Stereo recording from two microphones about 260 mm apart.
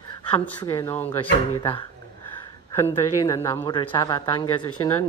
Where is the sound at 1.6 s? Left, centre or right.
Centre.